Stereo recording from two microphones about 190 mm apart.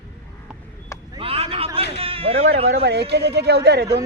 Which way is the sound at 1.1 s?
30° right (ahead or behind).